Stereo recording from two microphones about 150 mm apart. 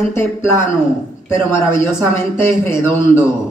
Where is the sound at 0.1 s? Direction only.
15° left (ahead or behind).